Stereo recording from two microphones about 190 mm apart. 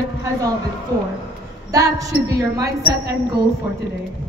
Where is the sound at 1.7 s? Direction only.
20° right (ahead or behind).